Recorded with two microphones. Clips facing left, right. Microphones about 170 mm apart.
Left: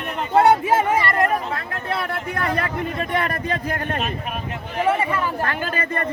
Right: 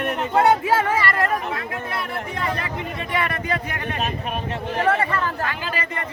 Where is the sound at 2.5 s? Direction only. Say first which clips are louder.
Left 4 dB; 55° left (ahead or behind).